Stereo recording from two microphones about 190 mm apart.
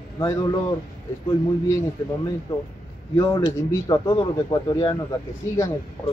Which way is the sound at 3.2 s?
20° left (ahead or behind).